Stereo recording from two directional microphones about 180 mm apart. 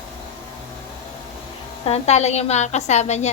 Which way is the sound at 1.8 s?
35° left (ahead or behind).